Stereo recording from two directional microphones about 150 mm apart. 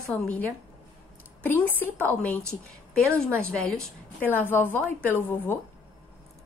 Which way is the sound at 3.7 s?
10° left (ahead or behind).